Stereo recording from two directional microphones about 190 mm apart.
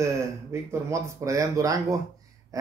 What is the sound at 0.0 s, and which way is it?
A man's voice, 15° right (ahead or behind).